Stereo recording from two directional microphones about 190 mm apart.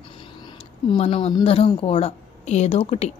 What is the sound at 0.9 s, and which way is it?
A woman's voice, 30° left (ahead or behind).